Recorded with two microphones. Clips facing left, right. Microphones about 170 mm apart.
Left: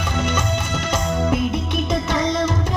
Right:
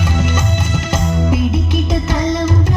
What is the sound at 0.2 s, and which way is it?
Music, 5° right (ahead or behind).